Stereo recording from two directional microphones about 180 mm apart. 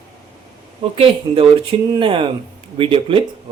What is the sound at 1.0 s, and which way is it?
Speech, 30° right (ahead or behind).